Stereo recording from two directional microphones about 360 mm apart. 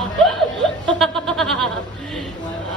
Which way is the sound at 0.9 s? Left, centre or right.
Centre.